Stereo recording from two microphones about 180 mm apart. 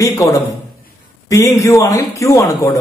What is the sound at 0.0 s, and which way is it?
A man's voice, 20° left (ahead or behind).